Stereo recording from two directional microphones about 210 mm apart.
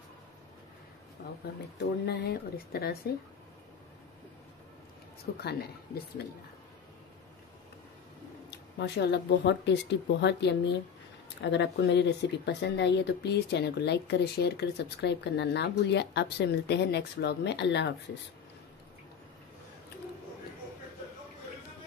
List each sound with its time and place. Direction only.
2.0 s speech: 50° left (ahead or behind)
5.2 s speech: 50° left (ahead or behind)
8.5 s speech: 55° left (ahead or behind)